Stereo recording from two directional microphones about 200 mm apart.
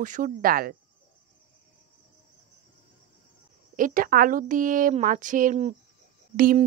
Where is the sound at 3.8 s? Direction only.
45° right (ahead or behind).